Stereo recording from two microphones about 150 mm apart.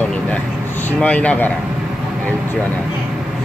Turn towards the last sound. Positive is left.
turn(degrees=10)  # may be behind; listen again after turning